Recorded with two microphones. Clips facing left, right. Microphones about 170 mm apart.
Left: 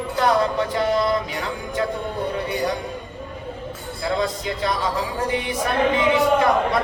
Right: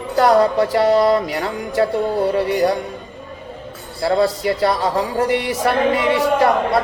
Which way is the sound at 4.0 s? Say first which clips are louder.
Right 7 dB; 35° right (ahead or behind).